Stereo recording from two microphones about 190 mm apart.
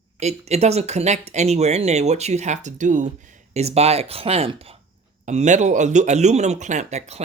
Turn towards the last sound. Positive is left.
turn(degrees=-35)  # may be behind; listen again after turning